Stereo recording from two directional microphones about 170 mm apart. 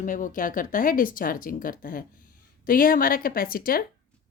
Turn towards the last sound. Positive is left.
turn(degrees=60)  # may be behind; listen again after turning